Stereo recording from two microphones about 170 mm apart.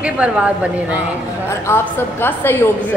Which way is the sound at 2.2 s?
15° left (ahead or behind).